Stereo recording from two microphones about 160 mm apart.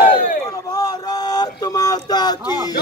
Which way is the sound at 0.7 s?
25° left (ahead or behind).